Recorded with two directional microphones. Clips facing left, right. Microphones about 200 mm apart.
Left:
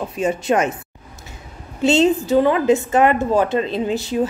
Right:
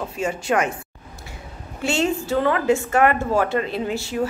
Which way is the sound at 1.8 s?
20° left (ahead or behind).